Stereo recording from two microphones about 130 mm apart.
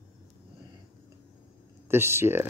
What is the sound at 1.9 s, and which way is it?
Speech, 20° right (ahead or behind).